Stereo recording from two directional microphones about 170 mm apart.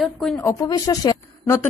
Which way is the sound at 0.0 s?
Centre (ahead or behind).